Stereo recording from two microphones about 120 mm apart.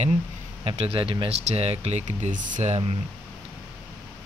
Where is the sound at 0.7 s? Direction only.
50° right (ahead or behind).